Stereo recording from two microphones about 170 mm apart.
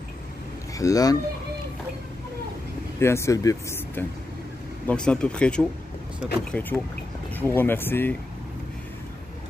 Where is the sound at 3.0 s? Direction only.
15° left (ahead or behind).